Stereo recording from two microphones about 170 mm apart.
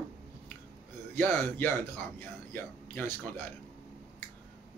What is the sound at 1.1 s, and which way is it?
Speech, 10° left (ahead or behind).